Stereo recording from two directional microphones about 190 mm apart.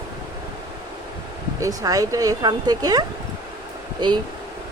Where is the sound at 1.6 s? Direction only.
20° right (ahead or behind).